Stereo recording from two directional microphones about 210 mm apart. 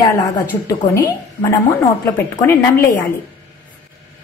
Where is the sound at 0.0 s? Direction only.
15° left (ahead or behind).